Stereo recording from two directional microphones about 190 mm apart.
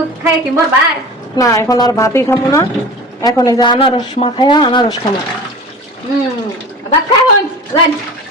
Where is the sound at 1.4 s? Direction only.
15° left (ahead or behind).